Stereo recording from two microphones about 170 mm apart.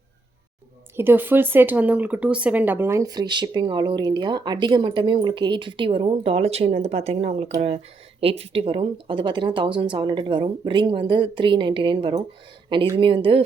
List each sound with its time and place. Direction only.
0.9 s speech: 10° right (ahead or behind); by 13.4 s 30° right (ahead or behind)